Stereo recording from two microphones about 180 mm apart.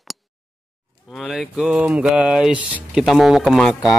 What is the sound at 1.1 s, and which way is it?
Mantra, centre (ahead or behind).